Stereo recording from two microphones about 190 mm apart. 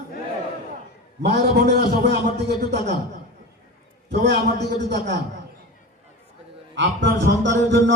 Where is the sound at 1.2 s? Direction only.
60° right (ahead or behind).